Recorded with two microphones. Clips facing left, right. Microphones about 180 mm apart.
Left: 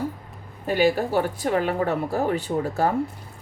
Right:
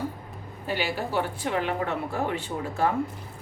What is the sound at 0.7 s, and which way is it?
Speech, 45° left (ahead or behind).